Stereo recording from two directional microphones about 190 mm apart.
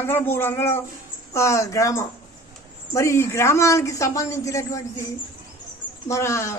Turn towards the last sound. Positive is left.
turn(degrees=15)  # may be behind; listen again after turning